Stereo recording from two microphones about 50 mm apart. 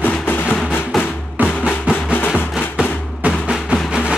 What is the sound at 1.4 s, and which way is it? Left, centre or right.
Music, centre.